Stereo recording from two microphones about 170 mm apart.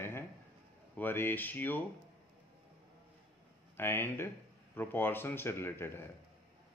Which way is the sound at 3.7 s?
15° left (ahead or behind).